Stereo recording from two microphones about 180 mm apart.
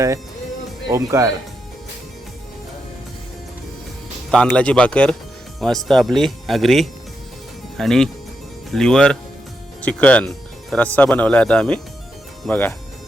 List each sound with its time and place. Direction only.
0.9 s speech: 20° right (ahead or behind)
4.3 s speech: 5° left (ahead or behind)